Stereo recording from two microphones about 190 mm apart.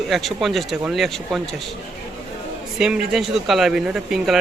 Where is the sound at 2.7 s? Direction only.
5° right (ahead or behind).